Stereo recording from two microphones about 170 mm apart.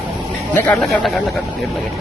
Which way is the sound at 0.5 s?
10° left (ahead or behind).